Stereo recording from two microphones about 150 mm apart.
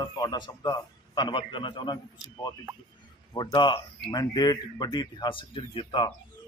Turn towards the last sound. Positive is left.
turn(degrees=35)  # may be behind; listen again after turning